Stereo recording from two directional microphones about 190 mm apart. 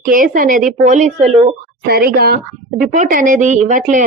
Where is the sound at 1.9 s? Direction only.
55° right (ahead or behind).